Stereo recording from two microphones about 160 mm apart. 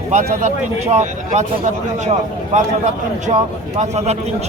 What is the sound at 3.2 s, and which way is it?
Speech, 45° right (ahead or behind).